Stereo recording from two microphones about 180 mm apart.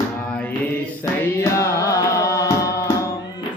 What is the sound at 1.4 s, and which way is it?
Music, 15° left (ahead or behind).